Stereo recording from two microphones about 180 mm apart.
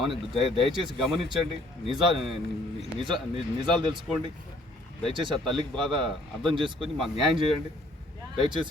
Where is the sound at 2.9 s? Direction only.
25° right (ahead or behind).